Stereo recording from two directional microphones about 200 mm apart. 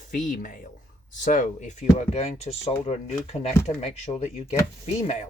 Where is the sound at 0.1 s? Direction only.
40° left (ahead or behind).